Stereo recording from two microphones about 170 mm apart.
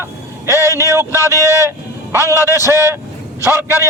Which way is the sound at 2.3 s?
15° right (ahead or behind).